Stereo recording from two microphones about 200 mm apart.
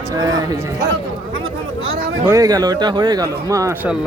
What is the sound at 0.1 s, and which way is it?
Speech, 20° right (ahead or behind).